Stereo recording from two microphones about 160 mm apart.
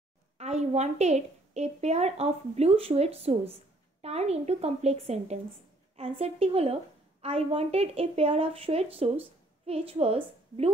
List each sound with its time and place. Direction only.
0.4 s a woman's voice: 45° right (ahead or behind)